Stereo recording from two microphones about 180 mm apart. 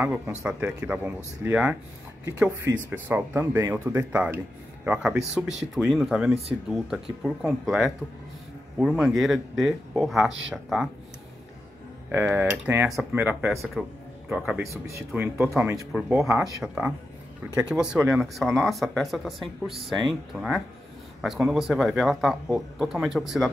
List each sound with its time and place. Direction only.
0.0 s speech: 5° right (ahead or behind)
12.1 s speech: 10° right (ahead or behind)
14.6 s speech: 15° right (ahead or behind)
16.6 s speech: 5° right (ahead or behind)